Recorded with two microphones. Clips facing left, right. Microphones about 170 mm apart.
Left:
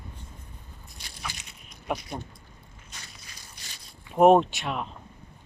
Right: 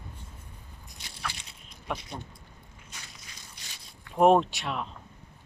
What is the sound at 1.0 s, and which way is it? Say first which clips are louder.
Biting: right 1 dB; 20° right (ahead or behind).